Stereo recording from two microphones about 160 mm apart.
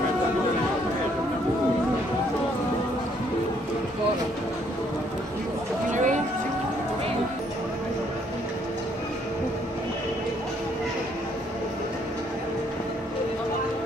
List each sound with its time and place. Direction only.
5.9 s music: 50° right (ahead or behind)